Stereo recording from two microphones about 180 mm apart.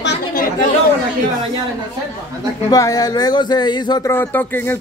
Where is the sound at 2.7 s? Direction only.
20° left (ahead or behind).